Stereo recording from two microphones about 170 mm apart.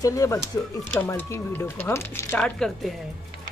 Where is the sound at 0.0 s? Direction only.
20° left (ahead or behind).